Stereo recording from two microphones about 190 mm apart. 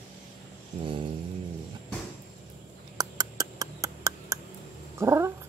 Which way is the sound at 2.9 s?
20° right (ahead or behind).